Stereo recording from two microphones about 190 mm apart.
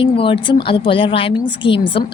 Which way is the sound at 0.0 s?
30° left (ahead or behind).